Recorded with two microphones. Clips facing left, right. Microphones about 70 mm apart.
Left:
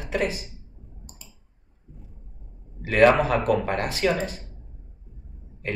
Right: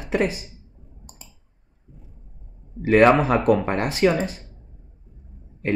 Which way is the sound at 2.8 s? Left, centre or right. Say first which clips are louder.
Right 2 dB; right.